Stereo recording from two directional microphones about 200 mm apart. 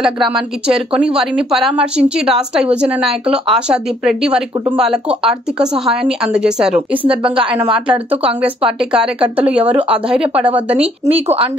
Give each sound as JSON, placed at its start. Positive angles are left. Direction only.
{"t": 0.0, "sound": "a woman's voice", "side_deg": -5}
{"t": 7.0, "sound": "speech", "side_deg": -25}
{"t": 8.7, "sound": "a woman's voice", "side_deg": -5}
{"t": 11.1, "sound": "speech", "side_deg": -30}